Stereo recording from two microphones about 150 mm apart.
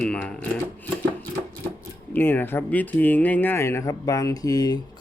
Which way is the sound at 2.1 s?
15° left (ahead or behind).